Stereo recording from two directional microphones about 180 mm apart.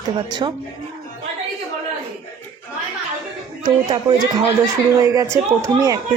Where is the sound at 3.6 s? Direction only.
25° right (ahead or behind).